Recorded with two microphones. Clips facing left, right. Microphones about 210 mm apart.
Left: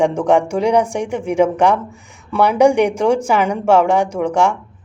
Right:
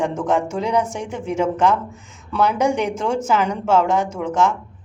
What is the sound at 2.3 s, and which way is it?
Speech, 65° left (ahead or behind).